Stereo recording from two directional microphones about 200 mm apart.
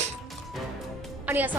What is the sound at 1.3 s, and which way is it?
Speech, 10° right (ahead or behind).